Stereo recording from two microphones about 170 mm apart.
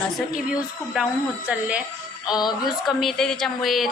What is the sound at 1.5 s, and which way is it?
Speech, 5° right (ahead or behind).